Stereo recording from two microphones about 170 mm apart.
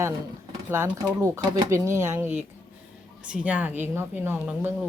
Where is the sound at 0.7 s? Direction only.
15° right (ahead or behind).